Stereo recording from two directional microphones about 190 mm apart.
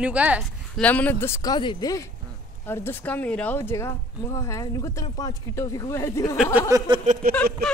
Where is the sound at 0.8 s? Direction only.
10° left (ahead or behind).